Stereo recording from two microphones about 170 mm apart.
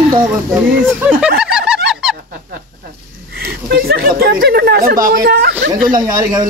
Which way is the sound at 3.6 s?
65° right (ahead or behind).